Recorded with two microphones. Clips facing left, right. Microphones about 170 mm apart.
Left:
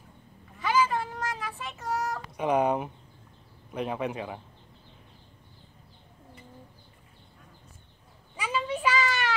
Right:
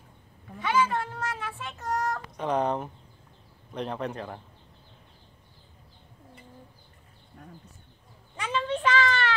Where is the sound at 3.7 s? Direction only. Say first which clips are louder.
Left 1 dB; 5° left (ahead or behind).